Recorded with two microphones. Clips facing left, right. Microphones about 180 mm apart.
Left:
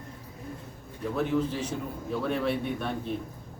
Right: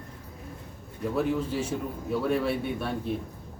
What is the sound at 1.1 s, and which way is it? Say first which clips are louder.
A man's voice: even; 5° right (ahead or behind).